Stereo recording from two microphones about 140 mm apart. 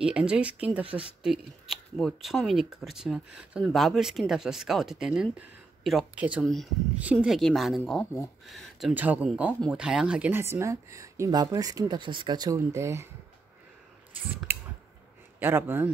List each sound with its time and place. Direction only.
0.0 s speech: 5° right (ahead or behind)
7.0 s speech: 10° right (ahead or behind)
8.9 s speech: 10° right (ahead or behind)
14.1 s scissors: 15° right (ahead or behind)
15.3 s a man's voice: 15° right (ahead or behind)